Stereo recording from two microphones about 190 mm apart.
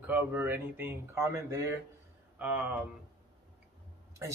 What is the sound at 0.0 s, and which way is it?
A man's voice, 10° right (ahead or behind).